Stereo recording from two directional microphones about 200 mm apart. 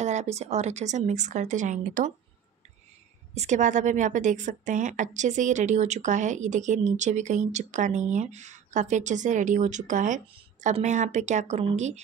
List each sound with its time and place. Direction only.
0.0 s a woman's voice: 35° right (ahead or behind)
3.3 s a woman's voice: 35° right (ahead or behind)